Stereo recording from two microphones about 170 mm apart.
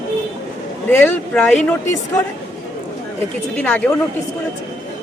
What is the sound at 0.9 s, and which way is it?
A man's voice, 10° left (ahead or behind).